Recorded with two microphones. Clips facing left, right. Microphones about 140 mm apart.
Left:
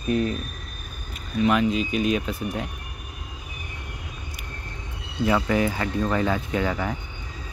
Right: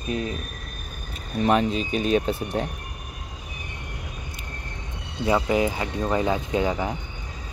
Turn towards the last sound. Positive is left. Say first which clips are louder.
# right 1 dB
turn(degrees=-20)  # may be behind; listen again after turning